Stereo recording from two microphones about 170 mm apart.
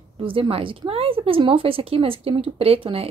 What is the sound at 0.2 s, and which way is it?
Speech, 35° right (ahead or behind).